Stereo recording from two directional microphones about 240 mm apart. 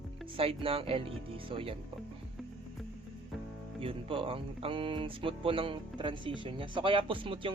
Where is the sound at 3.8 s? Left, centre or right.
Right.